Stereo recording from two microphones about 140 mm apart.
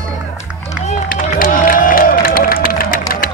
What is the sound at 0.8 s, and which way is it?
Music, 65° left (ahead or behind).